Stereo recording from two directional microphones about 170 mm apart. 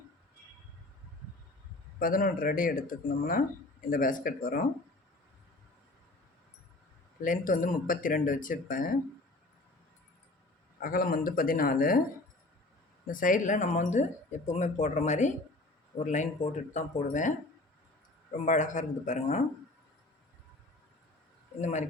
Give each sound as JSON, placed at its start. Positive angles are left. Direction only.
{"t": 2.0, "sound": "speech", "side_deg": 55}
{"t": 7.2, "sound": "speech", "side_deg": 50}
{"t": 10.8, "sound": "speech", "side_deg": 55}
{"t": 13.1, "sound": "speech", "side_deg": 55}
{"t": 18.3, "sound": "speech", "side_deg": 45}
{"t": 21.6, "sound": "speech", "side_deg": 45}